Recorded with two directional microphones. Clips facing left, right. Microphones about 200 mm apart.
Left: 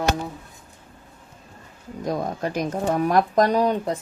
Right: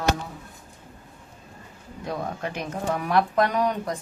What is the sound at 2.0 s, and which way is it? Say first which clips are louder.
Speech: left 5 dB; 40° left (ahead or behind).